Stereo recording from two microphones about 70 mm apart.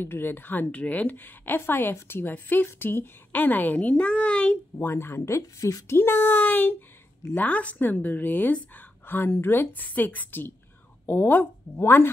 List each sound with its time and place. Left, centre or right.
0.0 s a woman's voice: left
4.7 s speech: left
5.9 s a woman's voice: left